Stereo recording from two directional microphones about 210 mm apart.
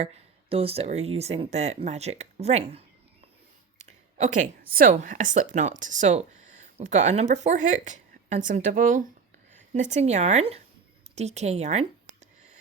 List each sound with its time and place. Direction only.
0.5 s speech: 30° right (ahead or behind)
3.8 s a woman's voice: 35° right (ahead or behind)
11.1 s a sound: 30° right (ahead or behind)